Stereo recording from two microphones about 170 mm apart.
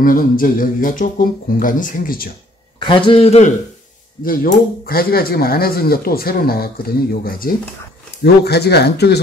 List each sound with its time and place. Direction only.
0.0 s speech: 55° left (ahead or behind)
3.1 s a man's voice: 35° left (ahead or behind)
4.2 s speech: 60° left (ahead or behind)
8.2 s speech: 70° left (ahead or behind)